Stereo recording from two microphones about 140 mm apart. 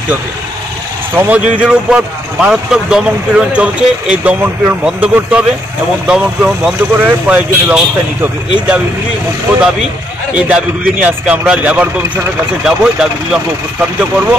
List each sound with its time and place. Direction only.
1.1 s speech: 10° right (ahead or behind)
10.3 s speech: 10° right (ahead or behind)